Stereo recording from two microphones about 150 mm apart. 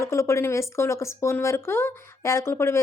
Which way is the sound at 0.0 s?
20° left (ahead or behind).